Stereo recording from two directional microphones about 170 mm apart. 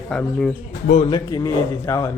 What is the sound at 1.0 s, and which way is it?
A man's voice, 25° left (ahead or behind).